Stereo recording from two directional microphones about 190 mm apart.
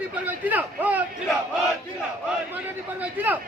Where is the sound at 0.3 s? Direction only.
10° right (ahead or behind).